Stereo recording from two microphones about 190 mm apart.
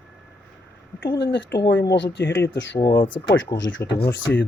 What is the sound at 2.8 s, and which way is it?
Speech, 20° left (ahead or behind).